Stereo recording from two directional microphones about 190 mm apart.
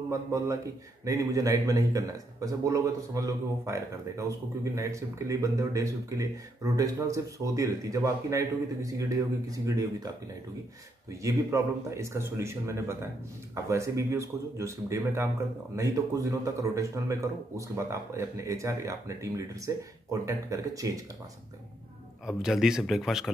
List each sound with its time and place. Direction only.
0.1 s a man's voice: 15° right (ahead or behind)
22.2 s a man's voice: centre (ahead or behind)